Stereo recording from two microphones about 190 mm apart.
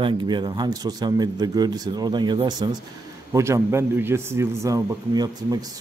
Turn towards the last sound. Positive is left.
turn(degrees=-20)  # may be behind; listen again after turning